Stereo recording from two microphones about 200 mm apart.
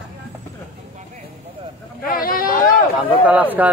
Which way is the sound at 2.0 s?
45° left (ahead or behind).